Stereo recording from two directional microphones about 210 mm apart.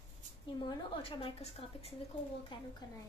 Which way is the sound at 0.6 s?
25° left (ahead or behind).